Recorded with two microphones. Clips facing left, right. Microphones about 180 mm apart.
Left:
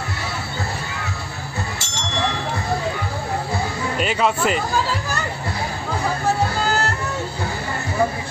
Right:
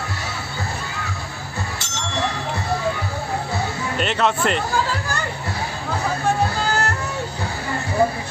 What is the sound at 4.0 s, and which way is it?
Speech, 5° left (ahead or behind).